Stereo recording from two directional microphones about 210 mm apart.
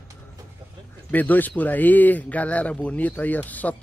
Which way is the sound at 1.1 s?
10° left (ahead or behind).